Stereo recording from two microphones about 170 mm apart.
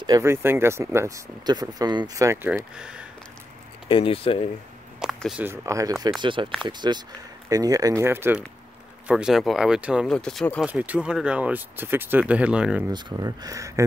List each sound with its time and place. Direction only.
0.0 s speech: 20° right (ahead or behind)
2.5 s speech: 5° right (ahead or behind)
3.9 s speech: 35° left (ahead or behind)
5.0 s speech: 5° right (ahead or behind)
10.6 s speech: 10° right (ahead or behind)
12.9 s speech: 20° right (ahead or behind)